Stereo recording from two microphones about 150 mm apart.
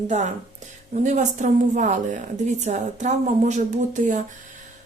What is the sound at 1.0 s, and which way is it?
A woman's voice, 50° right (ahead or behind).